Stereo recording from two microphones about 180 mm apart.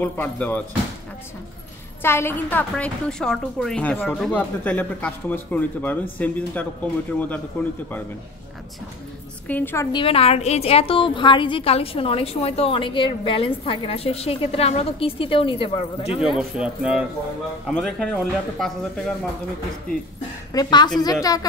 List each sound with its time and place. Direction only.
0.0 s speech: 10° left (ahead or behind)
2.0 s speech: 15° left (ahead or behind)
9.5 s speech: 10° left (ahead or behind)
9.9 s a woman's voice: 30° left (ahead or behind)
16.3 s speech: 5° right (ahead or behind)
20.5 s a woman's voice: 25° left (ahead or behind)